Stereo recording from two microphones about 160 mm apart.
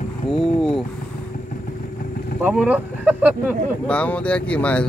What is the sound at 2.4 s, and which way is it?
Speech, 10° right (ahead or behind).